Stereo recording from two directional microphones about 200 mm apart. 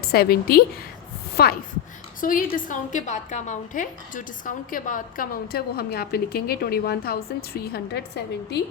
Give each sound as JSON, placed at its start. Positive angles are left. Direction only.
{"t": 0.0, "sound": "a woman's voice", "side_deg": 50}